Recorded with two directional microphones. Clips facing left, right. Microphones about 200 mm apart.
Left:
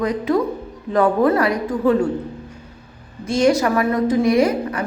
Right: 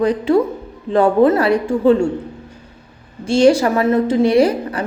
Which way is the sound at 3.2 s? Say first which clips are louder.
Right 4 dB; 30° right (ahead or behind).